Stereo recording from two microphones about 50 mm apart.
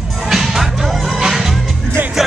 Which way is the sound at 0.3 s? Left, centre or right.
Centre.